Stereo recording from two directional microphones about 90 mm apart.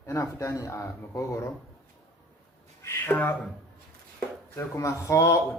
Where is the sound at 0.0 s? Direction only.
40° left (ahead or behind).